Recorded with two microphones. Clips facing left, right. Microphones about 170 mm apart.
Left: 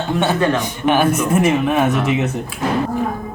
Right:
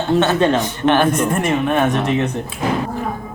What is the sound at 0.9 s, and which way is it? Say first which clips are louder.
Speech: even; 5° left (ahead or behind).